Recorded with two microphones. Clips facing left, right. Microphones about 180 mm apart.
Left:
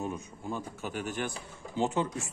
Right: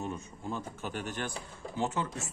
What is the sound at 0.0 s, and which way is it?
A man's voice, 15° left (ahead or behind).